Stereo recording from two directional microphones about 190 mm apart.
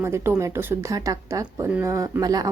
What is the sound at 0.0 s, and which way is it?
A woman's voice, 15° right (ahead or behind).